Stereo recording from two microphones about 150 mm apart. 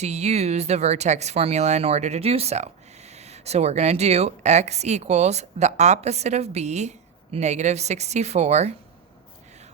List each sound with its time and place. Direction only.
0.0 s speech: 45° right (ahead or behind)